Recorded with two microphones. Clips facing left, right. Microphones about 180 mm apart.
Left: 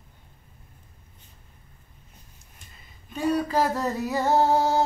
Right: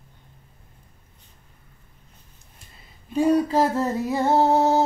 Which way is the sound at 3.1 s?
25° right (ahead or behind).